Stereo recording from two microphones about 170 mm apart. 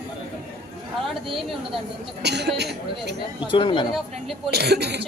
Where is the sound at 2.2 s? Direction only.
80° right.